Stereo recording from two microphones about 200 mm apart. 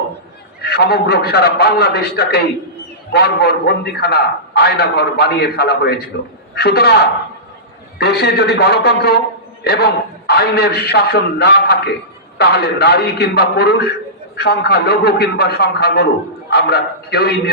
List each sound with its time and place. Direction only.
0.6 s a man's voice: 55° left (ahead or behind)
7.9 s a man's voice: 55° left (ahead or behind)